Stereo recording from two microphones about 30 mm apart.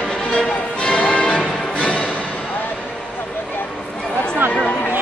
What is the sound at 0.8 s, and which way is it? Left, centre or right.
Music, left.